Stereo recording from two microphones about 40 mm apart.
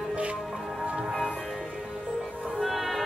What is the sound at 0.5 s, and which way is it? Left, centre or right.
Music, centre.